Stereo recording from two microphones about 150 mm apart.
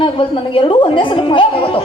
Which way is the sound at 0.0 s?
35° left (ahead or behind).